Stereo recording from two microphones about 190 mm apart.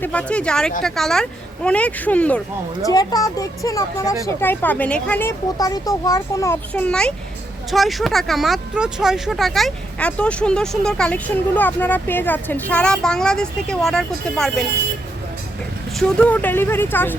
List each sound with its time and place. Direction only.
0.0 s speech: 5° left (ahead or behind)
2.8 s speech: 20° left (ahead or behind)
5.5 s speech: 20° left (ahead or behind); by 14.7 s 5° left (ahead or behind)
16.0 s speech: 5° left (ahead or behind)